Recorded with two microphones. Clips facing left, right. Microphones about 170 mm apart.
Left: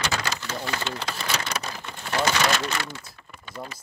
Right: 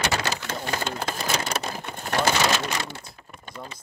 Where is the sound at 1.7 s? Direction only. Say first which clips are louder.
Right 2 dB; 50° right (ahead or behind).